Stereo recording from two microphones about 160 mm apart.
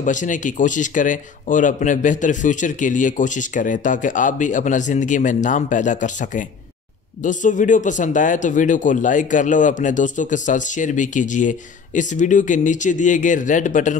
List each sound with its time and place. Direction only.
0.0 s speech: 50° left (ahead or behind)